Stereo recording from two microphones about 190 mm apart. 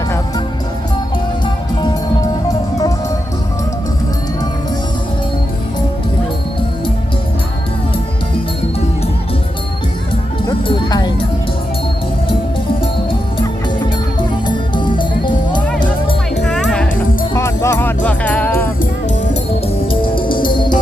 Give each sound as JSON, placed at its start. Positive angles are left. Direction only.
{"t": 2.5, "sound": "music", "side_deg": 20}
{"t": 10.4, "sound": "music", "side_deg": 20}
{"t": 13.4, "sound": "music", "side_deg": 25}
{"t": 16.5, "sound": "music", "side_deg": 5}
{"t": 17.3, "sound": "music", "side_deg": 15}
{"t": 19.9, "sound": "music", "side_deg": 25}